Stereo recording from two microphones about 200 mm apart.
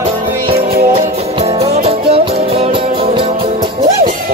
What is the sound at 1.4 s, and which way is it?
Music, 30° right (ahead or behind).